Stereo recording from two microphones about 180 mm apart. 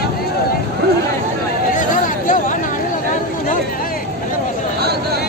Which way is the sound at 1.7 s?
45° left (ahead or behind).